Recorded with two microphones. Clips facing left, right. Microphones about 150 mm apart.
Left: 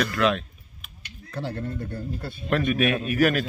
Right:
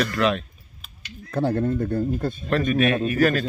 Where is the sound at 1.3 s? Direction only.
50° right (ahead or behind).